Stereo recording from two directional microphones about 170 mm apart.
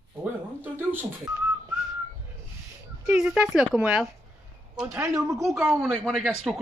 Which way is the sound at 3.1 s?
5° right (ahead or behind).